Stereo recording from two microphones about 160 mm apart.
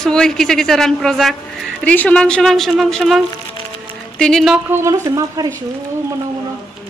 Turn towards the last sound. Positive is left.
turn(degrees=-25)  # may be behind; listen again after turning